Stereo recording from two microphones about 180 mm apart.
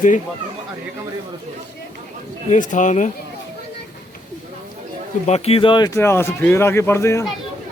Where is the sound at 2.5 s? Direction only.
45° left (ahead or behind).